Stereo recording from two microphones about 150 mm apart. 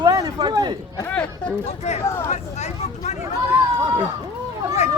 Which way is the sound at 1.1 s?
5° left (ahead or behind).